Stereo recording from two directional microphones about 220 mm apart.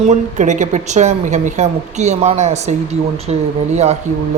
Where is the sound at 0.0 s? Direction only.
30° right (ahead or behind).